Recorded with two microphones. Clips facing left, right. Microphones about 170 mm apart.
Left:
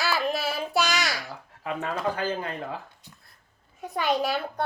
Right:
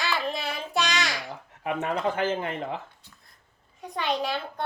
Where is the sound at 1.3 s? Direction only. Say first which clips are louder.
Right 2 dB; 20° right (ahead or behind).